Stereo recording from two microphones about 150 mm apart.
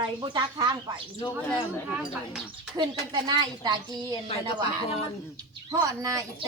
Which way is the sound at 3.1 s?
30° right (ahead or behind).